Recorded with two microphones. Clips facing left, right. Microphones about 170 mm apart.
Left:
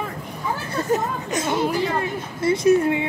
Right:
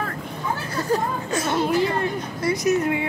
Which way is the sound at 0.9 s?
20° left (ahead or behind).